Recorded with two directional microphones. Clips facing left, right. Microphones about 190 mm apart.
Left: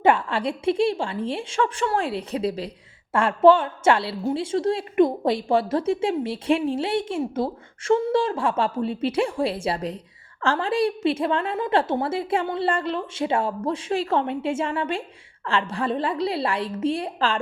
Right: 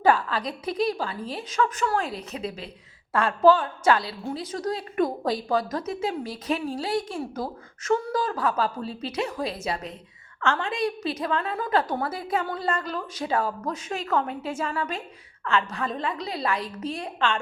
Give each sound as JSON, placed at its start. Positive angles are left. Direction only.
{"t": 0.0, "sound": "a woman's voice", "side_deg": 25}